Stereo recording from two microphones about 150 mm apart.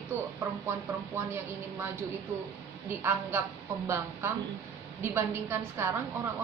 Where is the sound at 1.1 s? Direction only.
15° right (ahead or behind).